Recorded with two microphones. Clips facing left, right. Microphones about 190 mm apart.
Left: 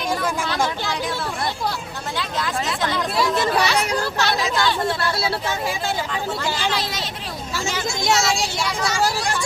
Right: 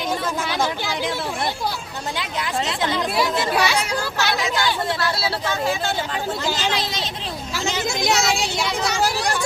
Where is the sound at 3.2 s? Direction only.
15° right (ahead or behind).